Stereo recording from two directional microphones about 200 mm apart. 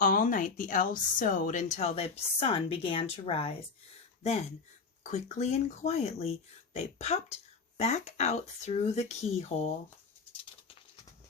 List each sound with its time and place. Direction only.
0.0 s speech: 45° left (ahead or behind)